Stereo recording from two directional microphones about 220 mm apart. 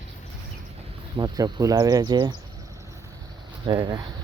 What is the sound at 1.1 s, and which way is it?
Speech, 15° right (ahead or behind).